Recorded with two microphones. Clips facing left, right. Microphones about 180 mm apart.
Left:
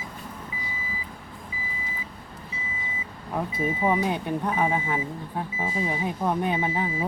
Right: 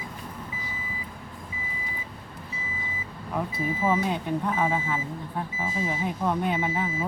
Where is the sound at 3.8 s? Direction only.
15° left (ahead or behind).